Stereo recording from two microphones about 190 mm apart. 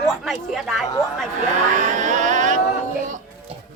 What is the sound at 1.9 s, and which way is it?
Vehicle, 40° right (ahead or behind).